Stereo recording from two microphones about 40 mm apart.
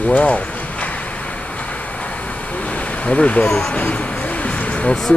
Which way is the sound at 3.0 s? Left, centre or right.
Left.